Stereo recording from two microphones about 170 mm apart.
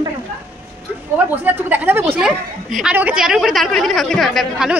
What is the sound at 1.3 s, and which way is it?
A woman's voice, 10° right (ahead or behind).